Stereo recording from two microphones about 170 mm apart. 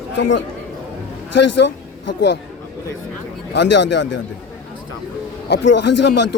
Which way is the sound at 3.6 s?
90° left.